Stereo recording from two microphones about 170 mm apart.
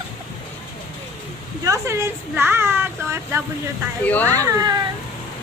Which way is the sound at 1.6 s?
15° right (ahead or behind).